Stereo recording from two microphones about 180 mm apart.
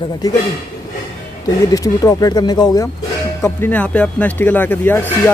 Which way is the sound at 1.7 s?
20° left (ahead or behind).